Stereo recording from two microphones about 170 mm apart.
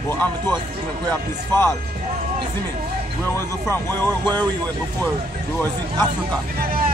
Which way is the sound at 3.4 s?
15° left (ahead or behind).